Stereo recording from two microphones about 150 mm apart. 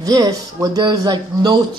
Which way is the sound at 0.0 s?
25° right (ahead or behind).